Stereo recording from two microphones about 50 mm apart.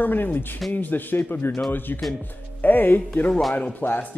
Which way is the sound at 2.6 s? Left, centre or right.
Left.